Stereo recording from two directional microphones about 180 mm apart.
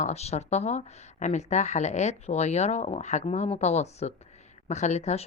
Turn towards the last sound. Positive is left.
turn(degrees=40)  # may be behind; listen again after turning